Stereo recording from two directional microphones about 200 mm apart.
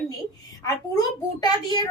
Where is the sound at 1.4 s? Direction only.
20° left (ahead or behind).